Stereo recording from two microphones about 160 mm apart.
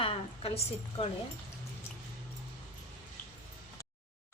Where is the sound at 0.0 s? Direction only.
35° left (ahead or behind).